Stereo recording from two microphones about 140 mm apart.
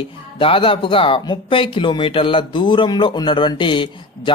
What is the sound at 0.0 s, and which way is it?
Speech, 40° left (ahead or behind).